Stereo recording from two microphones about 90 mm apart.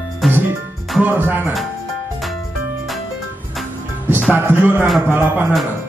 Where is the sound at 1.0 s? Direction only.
20° right (ahead or behind).